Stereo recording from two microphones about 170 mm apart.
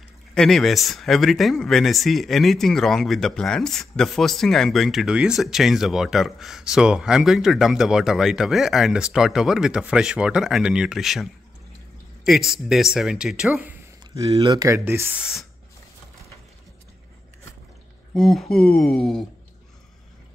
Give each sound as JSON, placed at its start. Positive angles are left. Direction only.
{"t": 0.3, "sound": "speech", "side_deg": 5}
{"t": 12.3, "sound": "speech", "side_deg": 0}
{"t": 14.3, "sound": "speech", "side_deg": -20}
{"t": 18.1, "sound": "speech", "side_deg": 0}